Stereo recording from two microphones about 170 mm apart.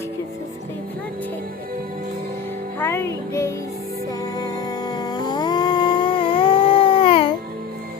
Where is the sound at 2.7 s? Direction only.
15° left (ahead or behind).